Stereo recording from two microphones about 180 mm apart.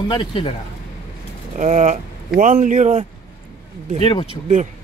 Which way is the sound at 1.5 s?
40° right (ahead or behind).